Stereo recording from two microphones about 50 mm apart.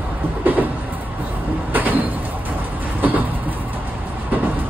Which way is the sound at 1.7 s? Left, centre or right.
Right.